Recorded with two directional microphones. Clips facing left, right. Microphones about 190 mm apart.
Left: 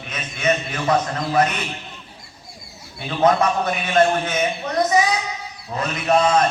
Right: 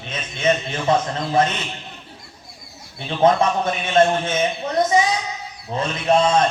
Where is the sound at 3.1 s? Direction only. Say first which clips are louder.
Right 1 dB; 25° right (ahead or behind).